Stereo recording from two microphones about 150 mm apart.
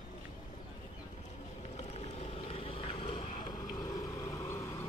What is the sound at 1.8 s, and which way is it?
Vehicle, 45° left (ahead or behind).